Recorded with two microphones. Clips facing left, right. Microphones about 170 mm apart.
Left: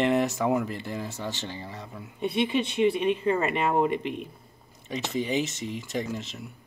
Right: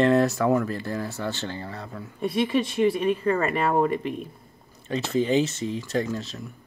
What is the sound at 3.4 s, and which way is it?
Speech, 40° right (ahead or behind).